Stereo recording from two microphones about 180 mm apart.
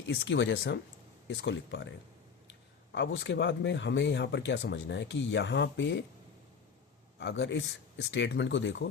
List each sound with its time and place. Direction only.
0.0 s speech: 75° left (ahead or behind)
2.9 s speech: 85° left
7.2 s speech: 80° left